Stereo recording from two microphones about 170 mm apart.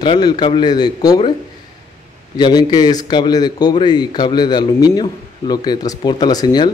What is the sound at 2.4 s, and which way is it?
A man's voice, 25° left (ahead or behind).